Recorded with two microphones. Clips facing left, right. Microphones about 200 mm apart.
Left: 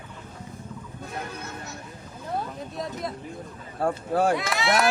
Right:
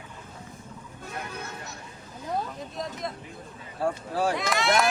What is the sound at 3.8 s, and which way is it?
Speech, 55° left (ahead or behind).